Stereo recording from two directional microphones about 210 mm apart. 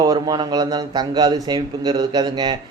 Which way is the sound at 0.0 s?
20° right (ahead or behind).